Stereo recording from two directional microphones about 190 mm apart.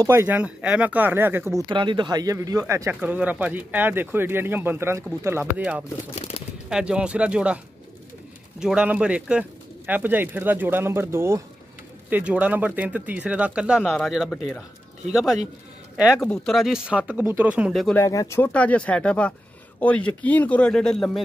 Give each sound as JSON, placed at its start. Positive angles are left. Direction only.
{"t": 0.0, "sound": "speech", "side_deg": -15}
{"t": 1.7, "sound": "speech", "side_deg": -25}
{"t": 6.1, "sound": "speech", "side_deg": 35}
{"t": 6.7, "sound": "speech", "side_deg": -5}
{"t": 16.0, "sound": "speech", "side_deg": -5}
{"t": 17.9, "sound": "speech", "side_deg": 15}